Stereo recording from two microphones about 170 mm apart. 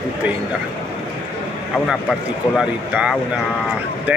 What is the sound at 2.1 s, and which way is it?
A man's voice, 5° right (ahead or behind).